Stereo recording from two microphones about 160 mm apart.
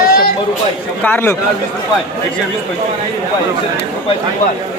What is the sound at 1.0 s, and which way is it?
Speech, 15° left (ahead or behind).